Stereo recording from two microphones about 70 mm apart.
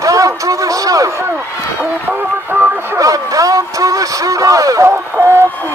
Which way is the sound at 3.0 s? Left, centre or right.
Right.